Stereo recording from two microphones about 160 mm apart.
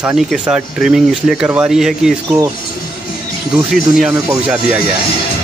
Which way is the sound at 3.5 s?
Centre (ahead or behind).